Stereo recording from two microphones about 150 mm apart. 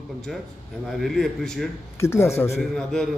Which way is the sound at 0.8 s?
Centre (ahead or behind).